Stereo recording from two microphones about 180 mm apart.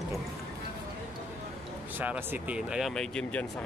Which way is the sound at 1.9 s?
10° right (ahead or behind).